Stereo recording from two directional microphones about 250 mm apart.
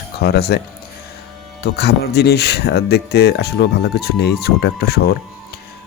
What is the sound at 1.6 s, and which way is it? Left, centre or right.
Speech, left.